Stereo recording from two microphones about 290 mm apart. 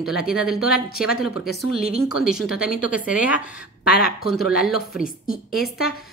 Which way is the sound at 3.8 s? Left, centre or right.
Left.